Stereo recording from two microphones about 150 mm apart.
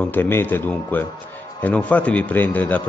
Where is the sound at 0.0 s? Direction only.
15° left (ahead or behind).